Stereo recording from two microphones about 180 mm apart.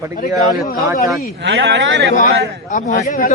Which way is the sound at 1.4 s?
75° right (ahead or behind).